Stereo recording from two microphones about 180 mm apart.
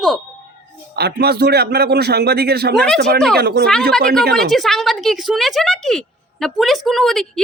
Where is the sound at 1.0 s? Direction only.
65° right (ahead or behind).